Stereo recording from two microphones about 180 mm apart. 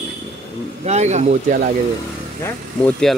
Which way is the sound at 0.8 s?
40° right (ahead or behind).